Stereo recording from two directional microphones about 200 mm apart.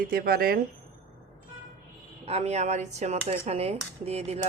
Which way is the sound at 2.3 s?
30° right (ahead or behind).